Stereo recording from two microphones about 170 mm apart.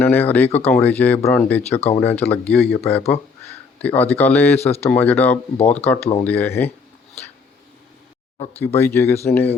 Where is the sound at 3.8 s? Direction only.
10° left (ahead or behind).